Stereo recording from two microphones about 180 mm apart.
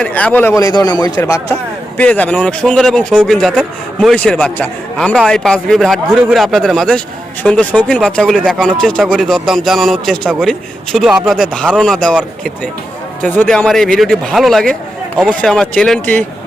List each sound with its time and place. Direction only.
0.0 s a man's voice: 5° left (ahead or behind)
13.2 s a man's voice: 5° left (ahead or behind)